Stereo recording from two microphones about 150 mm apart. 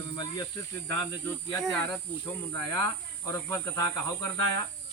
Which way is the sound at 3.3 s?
20° left (ahead or behind).